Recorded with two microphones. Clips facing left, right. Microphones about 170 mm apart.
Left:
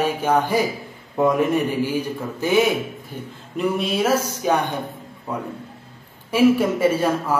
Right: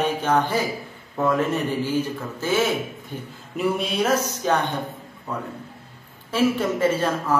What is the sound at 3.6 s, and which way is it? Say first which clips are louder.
A man's voice: left 2 dB; centre (ahead or behind).